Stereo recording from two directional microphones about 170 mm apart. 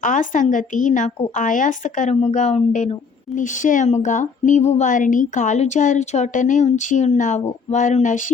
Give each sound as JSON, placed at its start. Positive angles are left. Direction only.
{"t": 0.0, "sound": "a woman's voice", "side_deg": 50}